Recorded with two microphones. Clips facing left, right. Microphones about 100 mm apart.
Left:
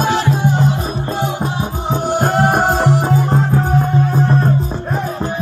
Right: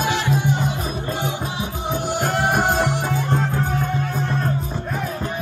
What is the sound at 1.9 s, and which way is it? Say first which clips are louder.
Music: left 6 dB; 45° left (ahead or behind).